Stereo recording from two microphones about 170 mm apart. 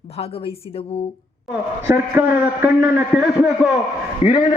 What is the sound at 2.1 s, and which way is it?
A man's voice, 10° right (ahead or behind).